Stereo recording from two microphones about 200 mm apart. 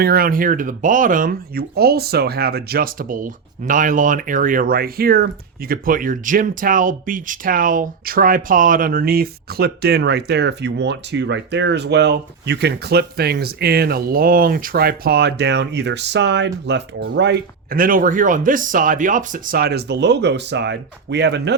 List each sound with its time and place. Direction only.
0.0 s speech: 45° right (ahead or behind)